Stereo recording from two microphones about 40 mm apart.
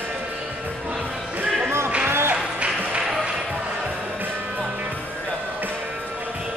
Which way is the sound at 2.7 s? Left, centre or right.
Right.